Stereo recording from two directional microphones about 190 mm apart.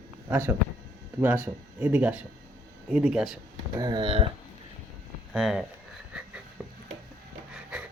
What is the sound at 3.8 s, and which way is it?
Speech, 20° right (ahead or behind).